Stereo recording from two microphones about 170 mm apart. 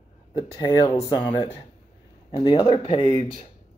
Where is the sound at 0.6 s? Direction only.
20° left (ahead or behind).